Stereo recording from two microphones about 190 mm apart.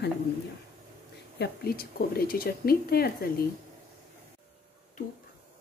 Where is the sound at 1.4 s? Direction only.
55° left (ahead or behind).